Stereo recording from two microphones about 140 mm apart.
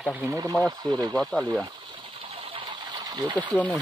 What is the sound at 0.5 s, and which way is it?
Speech, 5° left (ahead or behind).